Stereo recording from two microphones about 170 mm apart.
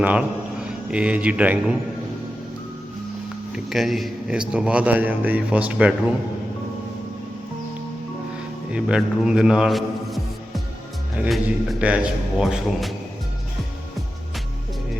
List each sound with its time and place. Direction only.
0.0 s a man's voice: 10° right (ahead or behind)
3.5 s a man's voice: centre (ahead or behind)
8.7 s a man's voice: 5° right (ahead or behind)